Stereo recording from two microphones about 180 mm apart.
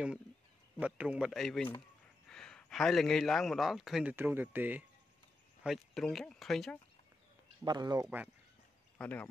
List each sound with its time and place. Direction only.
0.7 s a man's voice: 10° right (ahead or behind)
7.6 s speech: 25° right (ahead or behind)
8.9 s speech: 10° left (ahead or behind)